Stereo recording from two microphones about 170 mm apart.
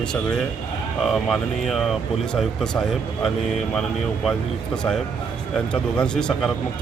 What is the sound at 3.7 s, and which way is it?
Speech, centre (ahead or behind).